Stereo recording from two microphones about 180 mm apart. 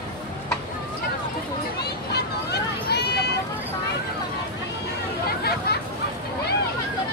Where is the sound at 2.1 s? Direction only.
65° left (ahead or behind).